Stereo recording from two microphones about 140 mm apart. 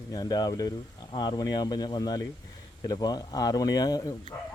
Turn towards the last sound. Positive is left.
turn(degrees=25)  # may be behind; listen again after turning